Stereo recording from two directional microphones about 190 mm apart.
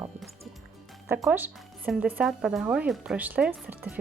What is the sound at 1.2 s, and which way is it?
Speech, 10° right (ahead or behind).